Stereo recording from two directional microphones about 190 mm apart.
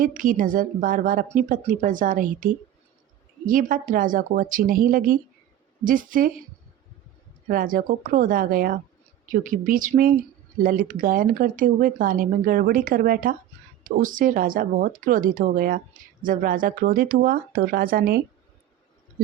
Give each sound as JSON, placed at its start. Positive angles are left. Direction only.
{"t": 0.0, "sound": "speech", "side_deg": -45}
{"t": 7.4, "sound": "speech", "side_deg": -45}